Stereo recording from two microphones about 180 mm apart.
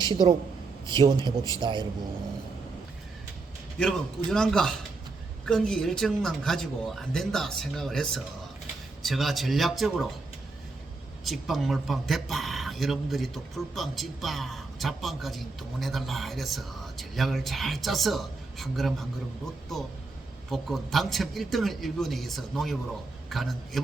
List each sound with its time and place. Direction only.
0.0 s a man's voice: 25° right (ahead or behind)
3.8 s speech: 5° left (ahead or behind)
11.3 s speech: centre (ahead or behind)
20.5 s speech: centre (ahead or behind)